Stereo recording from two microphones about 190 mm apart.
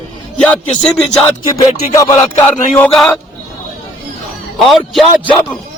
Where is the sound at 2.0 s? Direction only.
15° left (ahead or behind).